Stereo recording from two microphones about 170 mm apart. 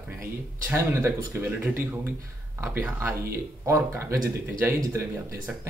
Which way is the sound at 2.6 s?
15° right (ahead or behind).